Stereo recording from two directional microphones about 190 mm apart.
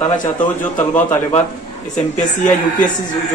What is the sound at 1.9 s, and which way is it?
Speech, 40° left (ahead or behind).